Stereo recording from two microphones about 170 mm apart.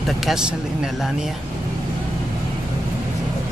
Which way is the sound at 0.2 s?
5° right (ahead or behind).